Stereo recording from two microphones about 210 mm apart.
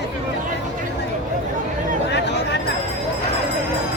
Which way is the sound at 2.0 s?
55° left (ahead or behind).